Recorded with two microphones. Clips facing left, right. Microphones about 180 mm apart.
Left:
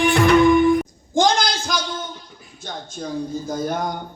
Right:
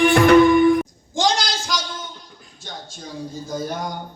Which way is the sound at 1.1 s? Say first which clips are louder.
Left 3 dB; 50° left (ahead or behind).